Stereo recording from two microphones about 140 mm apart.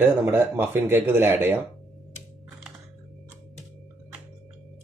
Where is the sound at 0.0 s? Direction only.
15° right (ahead or behind).